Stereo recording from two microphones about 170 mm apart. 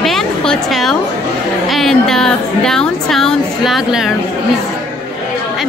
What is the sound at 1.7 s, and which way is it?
A woman's voice, centre (ahead or behind).